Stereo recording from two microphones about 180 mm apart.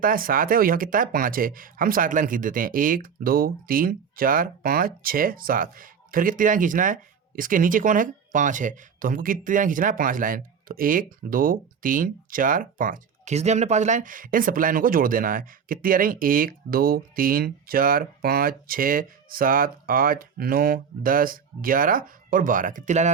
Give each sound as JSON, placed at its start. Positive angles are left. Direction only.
{"t": 0.0, "sound": "speech", "side_deg": -50}